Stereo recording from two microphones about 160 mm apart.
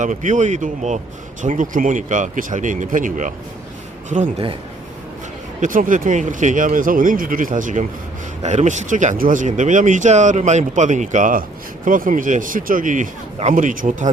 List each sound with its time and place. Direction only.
0.0 s speech: 50° right (ahead or behind)
5.5 s speech: 55° right (ahead or behind)